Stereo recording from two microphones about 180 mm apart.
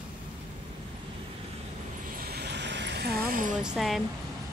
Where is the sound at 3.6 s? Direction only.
Centre (ahead or behind).